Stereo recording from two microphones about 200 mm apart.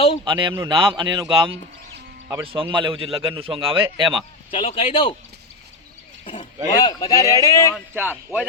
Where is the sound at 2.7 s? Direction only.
25° right (ahead or behind).